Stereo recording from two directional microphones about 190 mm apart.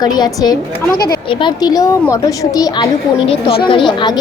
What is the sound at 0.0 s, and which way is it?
A woman's voice, 20° left (ahead or behind).